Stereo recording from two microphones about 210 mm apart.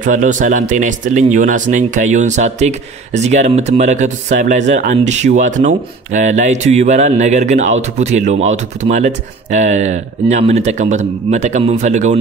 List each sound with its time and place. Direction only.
0.0 s speech: 35° right (ahead or behind)